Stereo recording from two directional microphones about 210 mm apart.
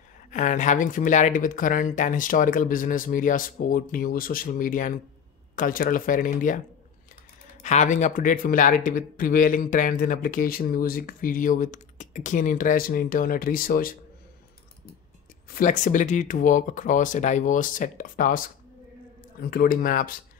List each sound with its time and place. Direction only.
0.3 s speech: 35° left (ahead or behind)
7.6 s speech: 35° left (ahead or behind)
15.5 s speech: 40° left (ahead or behind)